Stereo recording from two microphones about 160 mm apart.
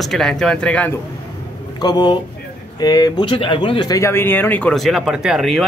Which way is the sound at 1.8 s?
30° left (ahead or behind).